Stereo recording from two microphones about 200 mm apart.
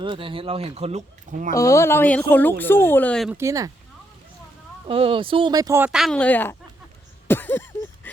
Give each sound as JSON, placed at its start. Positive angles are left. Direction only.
{"t": 0.0, "sound": "speech", "side_deg": -25}
{"t": 1.5, "sound": "speech", "side_deg": 15}
{"t": 3.2, "sound": "speech", "side_deg": -15}
{"t": 4.9, "sound": "speech", "side_deg": -30}
{"t": 7.3, "sound": "a sound", "side_deg": 10}